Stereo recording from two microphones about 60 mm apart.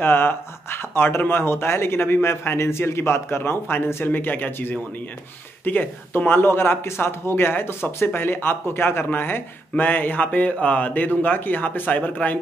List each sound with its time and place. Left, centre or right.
0.0 s speech: left